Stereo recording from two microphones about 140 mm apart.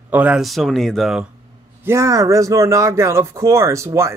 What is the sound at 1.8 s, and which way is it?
Speech, 20° right (ahead or behind).